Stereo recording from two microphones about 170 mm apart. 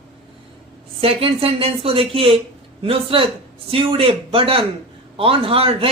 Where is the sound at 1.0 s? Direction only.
35° right (ahead or behind).